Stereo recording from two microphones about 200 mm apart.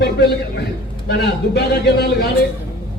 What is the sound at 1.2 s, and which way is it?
Speech, 55° left (ahead or behind).